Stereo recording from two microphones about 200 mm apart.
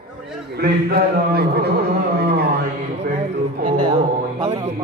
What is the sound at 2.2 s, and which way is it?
Mantra, 50° right (ahead or behind).